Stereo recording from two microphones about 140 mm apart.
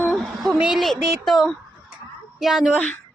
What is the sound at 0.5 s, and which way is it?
A woman's voice, centre (ahead or behind).